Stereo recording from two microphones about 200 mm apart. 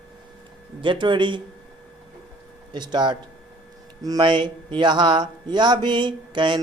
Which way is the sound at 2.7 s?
20° right (ahead or behind).